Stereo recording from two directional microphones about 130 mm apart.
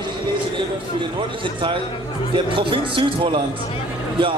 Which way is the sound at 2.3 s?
40° right (ahead or behind).